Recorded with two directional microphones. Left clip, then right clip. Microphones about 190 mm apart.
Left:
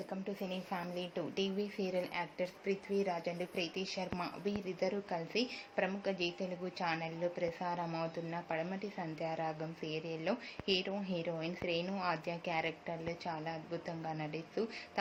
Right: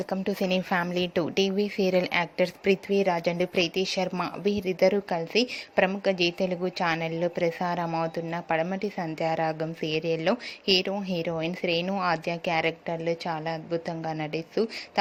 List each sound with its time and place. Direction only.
0.1 s a woman's voice: 50° right (ahead or behind); by 14.7 s 35° right (ahead or behind)